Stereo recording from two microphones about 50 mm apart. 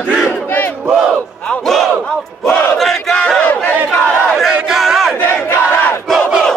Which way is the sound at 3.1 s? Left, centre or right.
Left.